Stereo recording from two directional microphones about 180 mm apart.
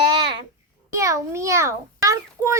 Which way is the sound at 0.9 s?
15° right (ahead or behind).